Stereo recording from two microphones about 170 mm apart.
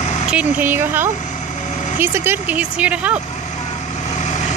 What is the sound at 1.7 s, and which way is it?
Vehicle, 45° left (ahead or behind).